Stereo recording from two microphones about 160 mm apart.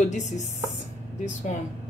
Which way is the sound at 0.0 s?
45° left (ahead or behind).